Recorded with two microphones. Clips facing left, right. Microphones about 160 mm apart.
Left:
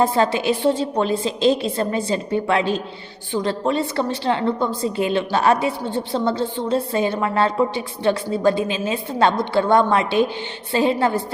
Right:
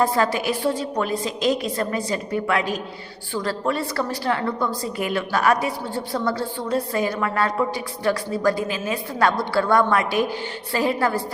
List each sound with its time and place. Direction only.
0.0 s a woman's voice: 25° left (ahead or behind)